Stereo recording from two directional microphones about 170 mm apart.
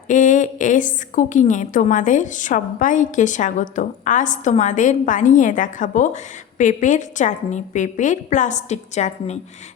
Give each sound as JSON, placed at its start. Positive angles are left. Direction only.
{"t": 0.1, "sound": "a woman's voice", "side_deg": 50}